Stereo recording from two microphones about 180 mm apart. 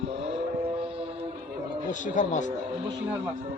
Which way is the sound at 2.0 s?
45° left (ahead or behind).